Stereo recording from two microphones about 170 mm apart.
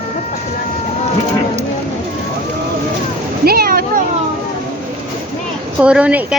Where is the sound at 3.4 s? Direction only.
60° right (ahead or behind).